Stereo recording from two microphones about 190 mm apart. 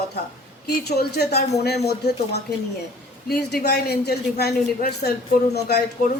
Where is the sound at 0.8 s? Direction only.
60° left (ahead or behind).